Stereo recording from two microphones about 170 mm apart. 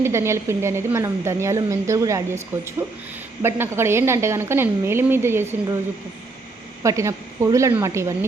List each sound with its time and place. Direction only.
0.0 s a woman's voice: 15° right (ahead or behind)
6.8 s a woman's voice: 15° right (ahead or behind)